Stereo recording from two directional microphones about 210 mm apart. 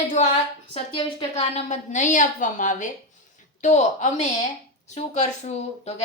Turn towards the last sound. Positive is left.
turn(degrees=30)  # may be behind; listen again after turning